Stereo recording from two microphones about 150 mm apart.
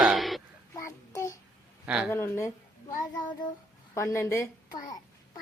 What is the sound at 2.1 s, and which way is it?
Speech, 15° left (ahead or behind).